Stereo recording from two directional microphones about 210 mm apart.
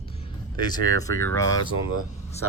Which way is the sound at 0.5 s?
20° left (ahead or behind).